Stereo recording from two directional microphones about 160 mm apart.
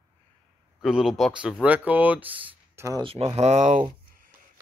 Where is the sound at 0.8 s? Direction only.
Centre (ahead or behind).